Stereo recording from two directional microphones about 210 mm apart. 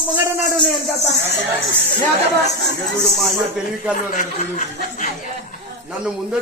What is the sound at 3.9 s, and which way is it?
Speech, 40° left (ahead or behind).